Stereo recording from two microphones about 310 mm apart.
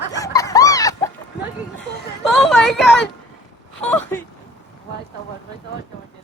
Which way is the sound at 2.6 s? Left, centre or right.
Centre.